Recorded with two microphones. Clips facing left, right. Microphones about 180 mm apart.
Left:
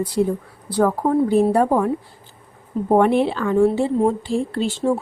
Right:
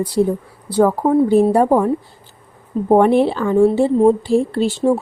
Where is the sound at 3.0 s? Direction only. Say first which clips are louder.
Right 3 dB; 35° right (ahead or behind).